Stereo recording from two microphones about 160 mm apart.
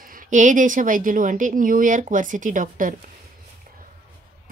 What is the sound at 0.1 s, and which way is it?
A woman's voice, 50° right (ahead or behind).